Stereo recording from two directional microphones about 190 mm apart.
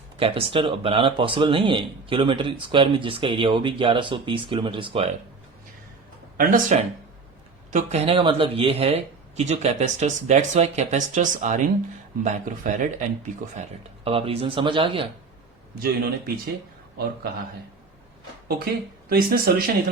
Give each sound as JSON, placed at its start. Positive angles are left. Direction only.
{"t": 0.2, "sound": "speech", "side_deg": -30}
{"t": 6.3, "sound": "speech", "side_deg": -45}
{"t": 15.8, "sound": "speech", "side_deg": -50}
{"t": 18.4, "sound": "speech", "side_deg": -55}